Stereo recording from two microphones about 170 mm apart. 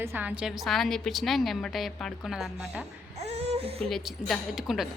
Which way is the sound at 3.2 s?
40° right (ahead or behind).